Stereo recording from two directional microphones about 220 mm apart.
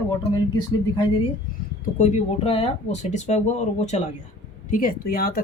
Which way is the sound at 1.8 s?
30° left (ahead or behind).